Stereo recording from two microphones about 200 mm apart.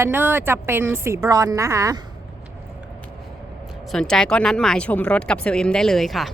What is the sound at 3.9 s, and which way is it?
Speech, 5° left (ahead or behind).